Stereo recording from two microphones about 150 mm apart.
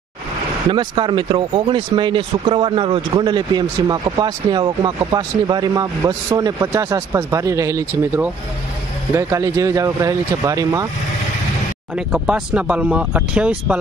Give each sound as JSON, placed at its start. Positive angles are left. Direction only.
{"t": 0.7, "sound": "speech", "side_deg": -35}
{"t": 9.1, "sound": "speech", "side_deg": -20}
{"t": 11.9, "sound": "speech", "side_deg": -5}